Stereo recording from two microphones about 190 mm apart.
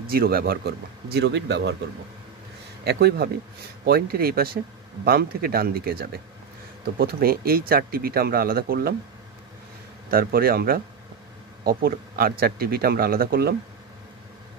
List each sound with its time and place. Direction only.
0.1 s speech: 50° right (ahead or behind)
1.1 s speech: 65° right (ahead or behind)
2.8 s speech: 60° right (ahead or behind)
10.1 s speech: 50° right (ahead or behind)